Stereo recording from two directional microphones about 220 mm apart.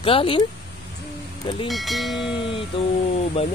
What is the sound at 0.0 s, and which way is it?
Speech, 25° left (ahead or behind).